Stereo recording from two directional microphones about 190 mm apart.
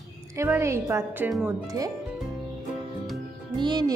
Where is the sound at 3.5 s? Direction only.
25° right (ahead or behind).